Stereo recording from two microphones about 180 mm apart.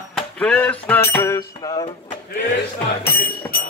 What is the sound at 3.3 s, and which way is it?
Music, 55° left (ahead or behind).